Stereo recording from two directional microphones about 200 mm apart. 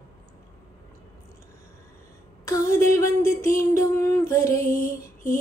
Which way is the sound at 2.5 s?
15° left (ahead or behind).